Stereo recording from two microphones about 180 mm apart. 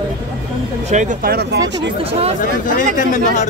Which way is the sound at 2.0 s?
35° right (ahead or behind).